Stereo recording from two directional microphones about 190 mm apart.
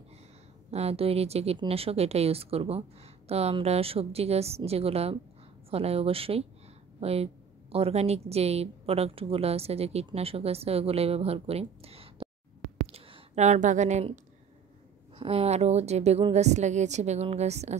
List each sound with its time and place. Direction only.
0.7 s a woman's voice: 35° right (ahead or behind)